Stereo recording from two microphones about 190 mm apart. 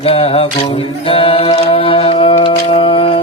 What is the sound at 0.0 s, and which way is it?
A capella, 30° left (ahead or behind).